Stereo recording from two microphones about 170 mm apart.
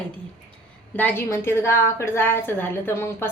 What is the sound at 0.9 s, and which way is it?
A woman's voice, 10° left (ahead or behind).